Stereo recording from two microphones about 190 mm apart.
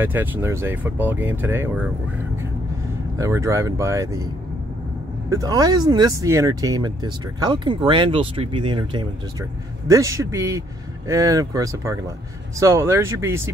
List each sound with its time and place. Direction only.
0.0 s speech: 10° right (ahead or behind)
3.2 s speech: 15° right (ahead or behind)
5.3 s speech: 20° right (ahead or behind)